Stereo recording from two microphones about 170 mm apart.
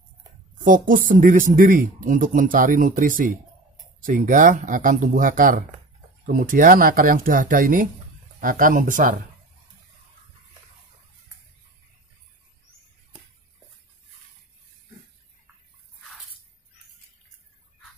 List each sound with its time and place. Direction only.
0.7 s speech: 50° right (ahead or behind)